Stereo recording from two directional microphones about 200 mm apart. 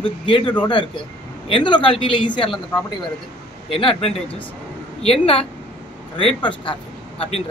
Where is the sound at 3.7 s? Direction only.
30° left (ahead or behind).